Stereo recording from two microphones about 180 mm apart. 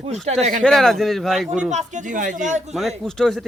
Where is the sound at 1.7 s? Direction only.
45° right (ahead or behind).